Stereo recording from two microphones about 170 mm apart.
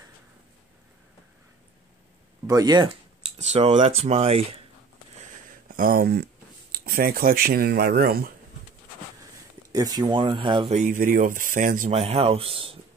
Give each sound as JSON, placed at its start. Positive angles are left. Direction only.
{"t": 2.4, "sound": "speech", "side_deg": -20}
{"t": 3.3, "sound": "speech", "side_deg": -40}
{"t": 5.8, "sound": "speech", "side_deg": -60}
{"t": 9.7, "sound": "speech", "side_deg": -20}
{"t": 10.7, "sound": "speech", "side_deg": -50}